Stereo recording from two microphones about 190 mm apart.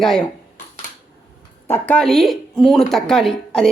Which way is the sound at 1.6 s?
10° left (ahead or behind).